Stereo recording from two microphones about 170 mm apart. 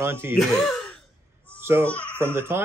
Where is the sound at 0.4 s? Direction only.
Centre (ahead or behind).